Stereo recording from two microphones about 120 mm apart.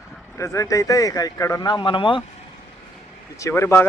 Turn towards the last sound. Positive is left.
turn(degrees=20)  # may be behind; listen again after turning